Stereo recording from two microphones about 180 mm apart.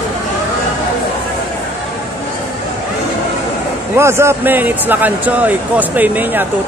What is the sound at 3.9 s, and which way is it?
Speech, 15° right (ahead or behind).